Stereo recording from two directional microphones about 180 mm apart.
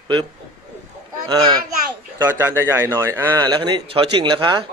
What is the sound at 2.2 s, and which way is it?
Speech, 10° right (ahead or behind).